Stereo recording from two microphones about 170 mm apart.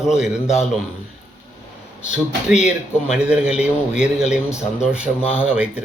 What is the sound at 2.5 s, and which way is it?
A man's voice, 5° right (ahead or behind).